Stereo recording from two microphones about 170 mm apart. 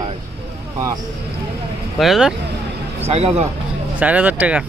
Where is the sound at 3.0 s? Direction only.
35° right (ahead or behind).